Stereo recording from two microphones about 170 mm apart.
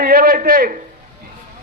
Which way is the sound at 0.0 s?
60° right (ahead or behind).